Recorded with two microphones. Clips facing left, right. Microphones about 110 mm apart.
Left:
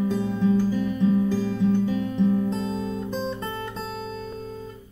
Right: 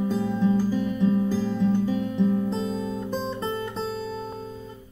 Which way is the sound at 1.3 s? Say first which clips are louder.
Even; 15° right (ahead or behind).